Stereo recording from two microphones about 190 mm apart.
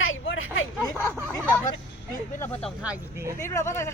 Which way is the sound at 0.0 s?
90° left.